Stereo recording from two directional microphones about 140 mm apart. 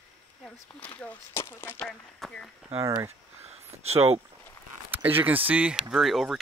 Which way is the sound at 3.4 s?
50° right (ahead or behind).